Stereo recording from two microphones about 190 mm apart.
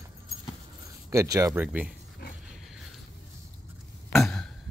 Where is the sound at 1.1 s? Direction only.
15° right (ahead or behind).